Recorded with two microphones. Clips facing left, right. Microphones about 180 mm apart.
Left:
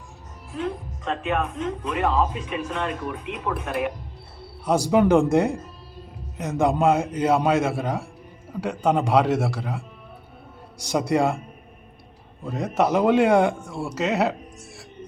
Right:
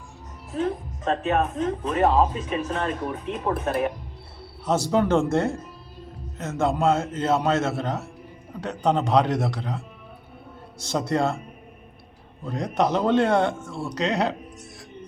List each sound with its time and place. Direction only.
0.5 s speech: 40° right (ahead or behind)
4.6 s speech: 10° left (ahead or behind)
12.5 s speech: 5° left (ahead or behind)